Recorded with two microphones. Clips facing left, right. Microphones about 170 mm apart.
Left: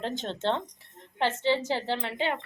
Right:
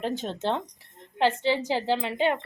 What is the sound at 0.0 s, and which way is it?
A woman's voice, 10° right (ahead or behind).